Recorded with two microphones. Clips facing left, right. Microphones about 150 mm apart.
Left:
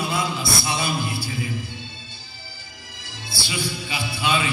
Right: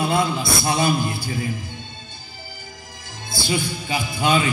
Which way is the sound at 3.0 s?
50° right (ahead or behind).